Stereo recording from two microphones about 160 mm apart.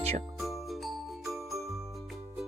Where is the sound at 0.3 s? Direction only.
Centre (ahead or behind).